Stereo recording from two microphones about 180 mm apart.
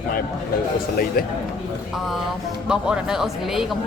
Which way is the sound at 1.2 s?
55° left (ahead or behind).